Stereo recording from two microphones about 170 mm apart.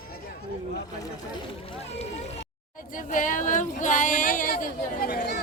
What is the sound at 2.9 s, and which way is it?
Speech, 50° left (ahead or behind).